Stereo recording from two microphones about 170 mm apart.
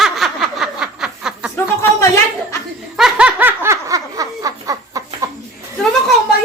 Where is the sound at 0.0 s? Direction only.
Centre (ahead or behind).